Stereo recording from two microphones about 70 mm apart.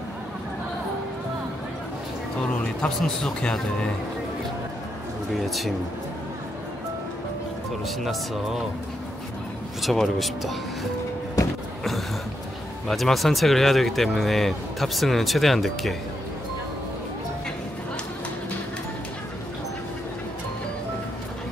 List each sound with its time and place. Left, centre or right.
2.5 s speech: centre
5.3 s speech: centre
7.8 s speech: centre
9.8 s speech: centre
11.4 s a sound: left
12.8 s speech: centre